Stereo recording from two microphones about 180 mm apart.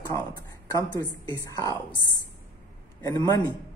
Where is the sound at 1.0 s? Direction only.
15° left (ahead or behind).